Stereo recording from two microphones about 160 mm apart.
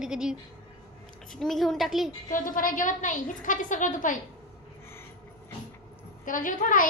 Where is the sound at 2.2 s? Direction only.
60° left (ahead or behind).